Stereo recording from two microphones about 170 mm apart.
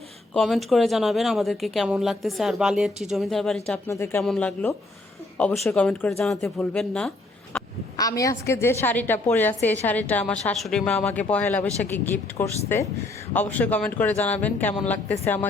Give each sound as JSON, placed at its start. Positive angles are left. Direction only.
{"t": 0.3, "sound": "speech", "side_deg": 0}
{"t": 3.8, "sound": "speech", "side_deg": 15}
{"t": 4.2, "sound": "speech", "side_deg": 5}
{"t": 7.9, "sound": "speech", "side_deg": 20}